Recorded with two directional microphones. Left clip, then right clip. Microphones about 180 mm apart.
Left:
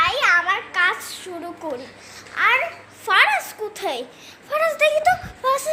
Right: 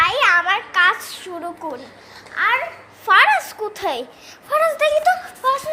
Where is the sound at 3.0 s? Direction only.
5° right (ahead or behind).